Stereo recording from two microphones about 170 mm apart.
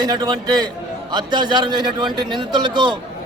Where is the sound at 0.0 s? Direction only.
25° right (ahead or behind).